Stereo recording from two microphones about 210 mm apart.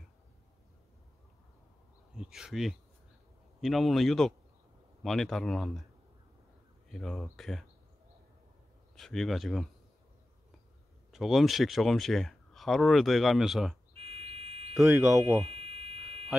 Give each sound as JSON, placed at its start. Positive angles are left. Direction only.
{"t": 2.1, "sound": "speech", "side_deg": -5}
{"t": 6.9, "sound": "speech", "side_deg": 0}
{"t": 8.9, "sound": "speech", "side_deg": 0}
{"t": 11.1, "sound": "speech", "side_deg": 0}
{"t": 13.9, "sound": "fire alarm", "side_deg": -30}
{"t": 14.8, "sound": "speech", "side_deg": -15}
{"t": 15.5, "sound": "a sound", "side_deg": -30}